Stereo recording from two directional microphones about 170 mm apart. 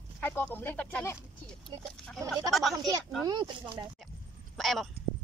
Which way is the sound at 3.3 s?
25° right (ahead or behind).